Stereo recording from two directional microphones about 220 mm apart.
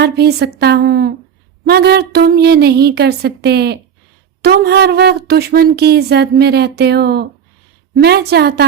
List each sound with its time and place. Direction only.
0.0 s speech: 50° right (ahead or behind)